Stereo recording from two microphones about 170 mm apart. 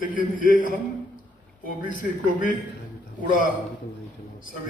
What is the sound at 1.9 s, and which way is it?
A man's voice, 50° left (ahead or behind).